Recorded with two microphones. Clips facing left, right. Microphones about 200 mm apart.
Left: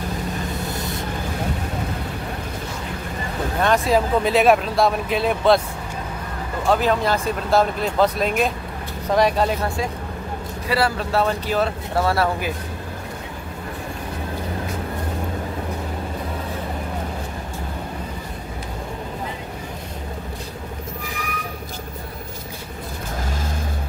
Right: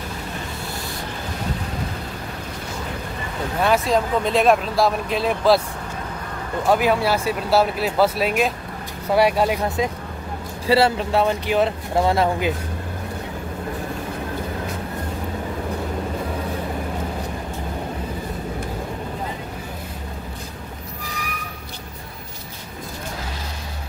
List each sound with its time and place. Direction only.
3.6 s speech: centre (ahead or behind)
6.6 s speech: 10° right (ahead or behind)